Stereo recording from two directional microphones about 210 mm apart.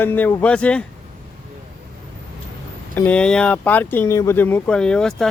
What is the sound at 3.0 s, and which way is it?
Speech, 5° left (ahead or behind).